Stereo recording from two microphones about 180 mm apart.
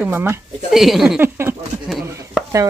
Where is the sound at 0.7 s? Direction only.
Centre (ahead or behind).